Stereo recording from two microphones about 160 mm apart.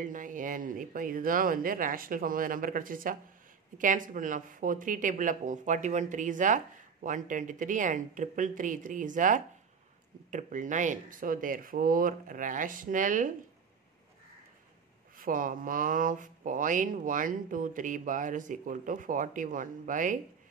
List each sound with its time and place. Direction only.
0.0 s speech: 55° right (ahead or behind)
15.1 s speech: 60° right (ahead or behind)